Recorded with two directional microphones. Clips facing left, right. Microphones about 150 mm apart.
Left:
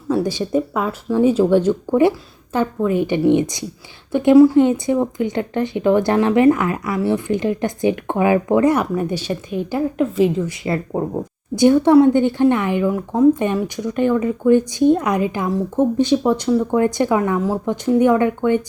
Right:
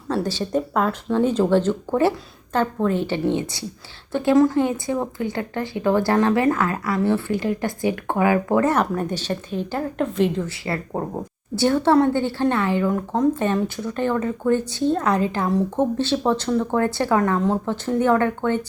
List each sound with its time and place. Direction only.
0.1 s speech: 10° left (ahead or behind)
11.5 s speech: 15° left (ahead or behind)